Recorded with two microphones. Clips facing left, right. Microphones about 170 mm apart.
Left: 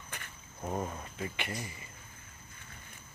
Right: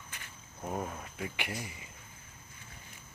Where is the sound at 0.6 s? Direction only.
5° right (ahead or behind).